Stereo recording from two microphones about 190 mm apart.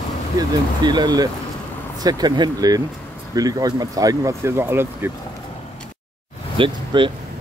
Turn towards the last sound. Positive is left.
turn(degrees=-25)  # may be behind; listen again after turning